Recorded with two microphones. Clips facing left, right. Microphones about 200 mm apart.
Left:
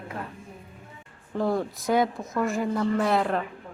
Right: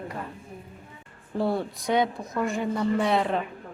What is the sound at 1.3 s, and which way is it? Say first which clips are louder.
A woman's voice: even; 5° right (ahead or behind).